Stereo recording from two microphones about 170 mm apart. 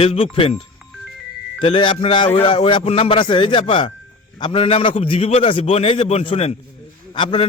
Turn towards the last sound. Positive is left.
turn(degrees=30)  # may be behind; listen again after turning